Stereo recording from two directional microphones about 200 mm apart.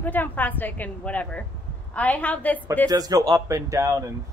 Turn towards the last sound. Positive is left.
turn(degrees=-15)  # may be behind; listen again after turning